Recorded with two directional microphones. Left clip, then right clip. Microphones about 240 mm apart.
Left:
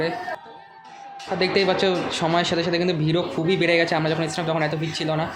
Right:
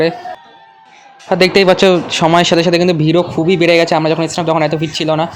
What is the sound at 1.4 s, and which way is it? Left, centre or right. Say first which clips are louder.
A man's voice: right 11 dB; right.